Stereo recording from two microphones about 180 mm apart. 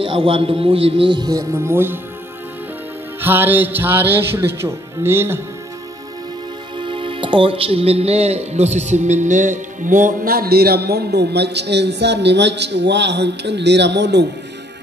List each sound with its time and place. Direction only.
0.0 s speech: 30° right (ahead or behind); by 2.0 s 15° right (ahead or behind)
3.2 s music: 10° right (ahead or behind)
6.8 s speech: 30° right (ahead or behind); by 14.2 s 70° right (ahead or behind)